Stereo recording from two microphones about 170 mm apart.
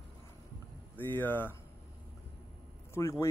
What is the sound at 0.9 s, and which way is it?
Speech, 10° left (ahead or behind).